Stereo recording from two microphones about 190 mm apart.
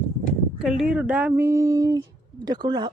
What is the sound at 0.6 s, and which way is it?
A woman's voice, centre (ahead or behind).